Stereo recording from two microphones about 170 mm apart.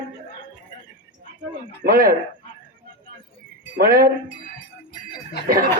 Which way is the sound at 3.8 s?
60° right (ahead or behind).